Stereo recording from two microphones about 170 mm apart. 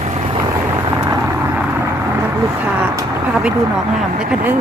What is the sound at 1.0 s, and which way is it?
Vehicle, 15° right (ahead or behind).